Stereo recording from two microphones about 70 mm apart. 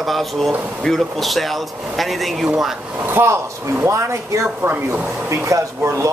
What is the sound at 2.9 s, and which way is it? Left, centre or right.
Speech, right.